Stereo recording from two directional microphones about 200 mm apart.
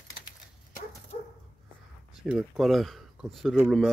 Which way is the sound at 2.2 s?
Centre (ahead or behind).